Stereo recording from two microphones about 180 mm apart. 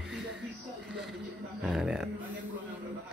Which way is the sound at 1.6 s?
5° right (ahead or behind).